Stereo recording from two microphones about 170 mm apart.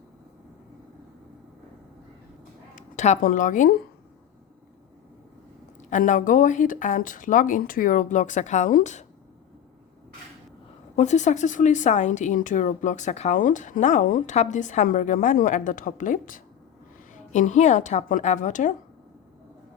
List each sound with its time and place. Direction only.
2.7 s speech: 45° left (ahead or behind)
5.9 s a woman's voice: 50° left (ahead or behind)
10.9 s a woman's voice: 45° left (ahead or behind)